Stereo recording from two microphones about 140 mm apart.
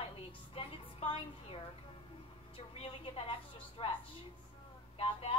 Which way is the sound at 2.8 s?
40° left (ahead or behind).